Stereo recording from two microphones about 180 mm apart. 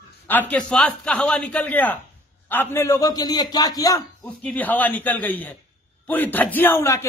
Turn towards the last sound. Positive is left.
turn(degrees=15)  # may be behind; listen again after turning